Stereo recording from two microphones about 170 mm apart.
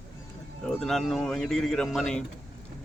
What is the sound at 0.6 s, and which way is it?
Speech, 5° left (ahead or behind).